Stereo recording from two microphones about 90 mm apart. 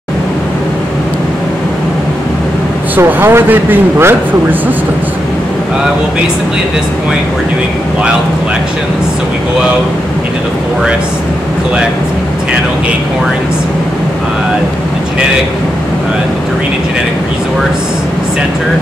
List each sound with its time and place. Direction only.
3.0 s speech: 25° right (ahead or behind)